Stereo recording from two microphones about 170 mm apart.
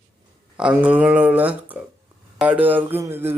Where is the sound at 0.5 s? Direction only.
5° right (ahead or behind).